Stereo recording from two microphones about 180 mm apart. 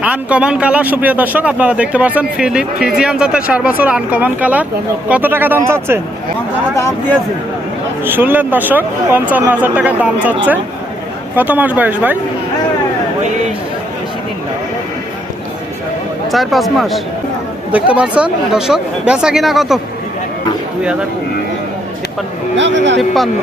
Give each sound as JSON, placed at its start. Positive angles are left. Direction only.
{"t": 0.0, "sound": "a man's voice", "side_deg": -10}
{"t": 6.7, "sound": "speech", "side_deg": 15}
{"t": 8.0, "sound": "a man's voice", "side_deg": -10}
{"t": 11.3, "sound": "a man's voice", "side_deg": -10}
{"t": 16.3, "sound": "speech", "side_deg": 0}
{"t": 22.5, "sound": "speech", "side_deg": -85}
{"t": 23.0, "sound": "speech", "side_deg": 0}